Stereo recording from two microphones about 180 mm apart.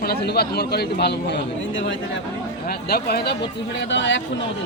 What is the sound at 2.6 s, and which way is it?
Speech, 60° left (ahead or behind).